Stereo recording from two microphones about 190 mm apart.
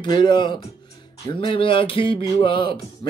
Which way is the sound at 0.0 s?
25° left (ahead or behind).